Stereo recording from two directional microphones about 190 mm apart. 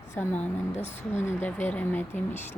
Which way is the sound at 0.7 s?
35° left (ahead or behind).